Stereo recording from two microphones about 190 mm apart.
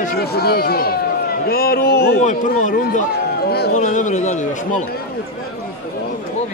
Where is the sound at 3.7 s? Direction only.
40° left (ahead or behind).